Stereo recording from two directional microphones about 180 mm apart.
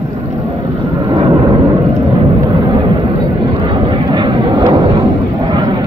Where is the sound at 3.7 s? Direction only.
25° right (ahead or behind).